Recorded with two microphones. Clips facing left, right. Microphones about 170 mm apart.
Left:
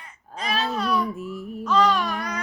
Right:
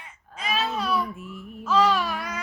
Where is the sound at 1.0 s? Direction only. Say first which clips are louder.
Left 6 dB; 40° left (ahead or behind).